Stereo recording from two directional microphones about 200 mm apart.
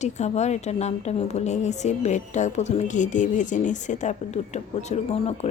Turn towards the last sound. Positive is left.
turn(degrees=30)  # may be behind; listen again after turning